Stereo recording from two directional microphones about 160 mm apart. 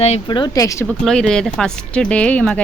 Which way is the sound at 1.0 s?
5° left (ahead or behind).